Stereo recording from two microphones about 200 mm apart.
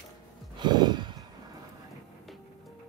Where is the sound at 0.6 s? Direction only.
20° right (ahead or behind).